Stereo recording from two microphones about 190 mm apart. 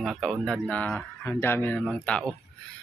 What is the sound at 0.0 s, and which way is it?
A man's voice, centre (ahead or behind).